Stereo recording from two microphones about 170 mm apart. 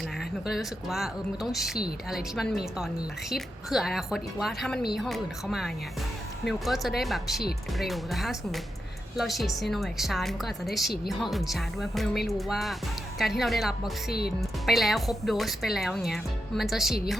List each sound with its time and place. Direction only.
0.4 s speech: centre (ahead or behind)
14.1 s speech: 65° left (ahead or behind)
14.7 s speech: centre (ahead or behind)